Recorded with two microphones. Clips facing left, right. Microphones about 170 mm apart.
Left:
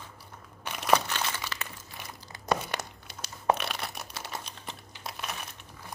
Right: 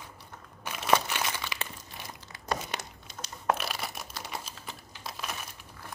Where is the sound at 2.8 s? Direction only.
20° left (ahead or behind).